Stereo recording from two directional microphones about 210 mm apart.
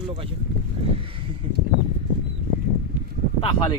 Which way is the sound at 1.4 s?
25° right (ahead or behind).